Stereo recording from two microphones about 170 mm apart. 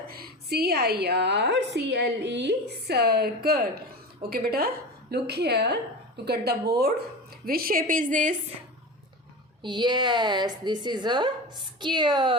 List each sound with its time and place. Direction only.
0.1 s a woman's voice: 65° right (ahead or behind)
6.2 s a woman's voice: 70° right (ahead or behind); by 8.4 s 50° right (ahead or behind)
9.6 s a woman's voice: 25° right (ahead or behind)